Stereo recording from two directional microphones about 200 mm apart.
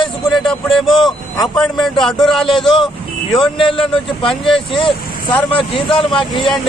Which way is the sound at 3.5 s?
25° left (ahead or behind).